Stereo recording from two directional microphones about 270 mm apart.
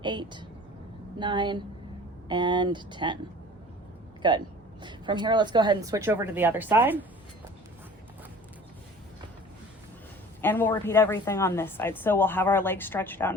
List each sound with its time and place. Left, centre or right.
0.0 s a woman's voice: centre
4.2 s a woman's voice: centre
10.4 s a woman's voice: centre